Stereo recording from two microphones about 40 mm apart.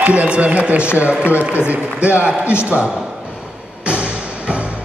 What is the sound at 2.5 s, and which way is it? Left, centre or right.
Speech, left.